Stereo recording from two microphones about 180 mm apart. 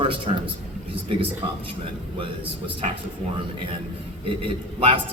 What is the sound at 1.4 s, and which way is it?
Speech, 30° right (ahead or behind).